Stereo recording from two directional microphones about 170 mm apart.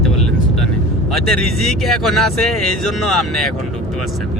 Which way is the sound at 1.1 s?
Centre (ahead or behind).